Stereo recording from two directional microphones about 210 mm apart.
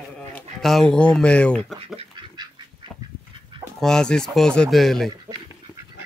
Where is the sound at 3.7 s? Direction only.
5° left (ahead or behind).